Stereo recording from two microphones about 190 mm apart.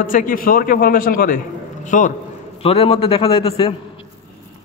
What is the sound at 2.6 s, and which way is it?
A man's voice, 30° left (ahead or behind).